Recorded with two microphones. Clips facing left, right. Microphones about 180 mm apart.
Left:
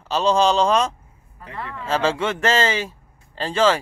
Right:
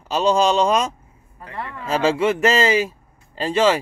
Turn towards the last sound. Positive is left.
turn(degrees=-10)  # may be behind; listen again after turning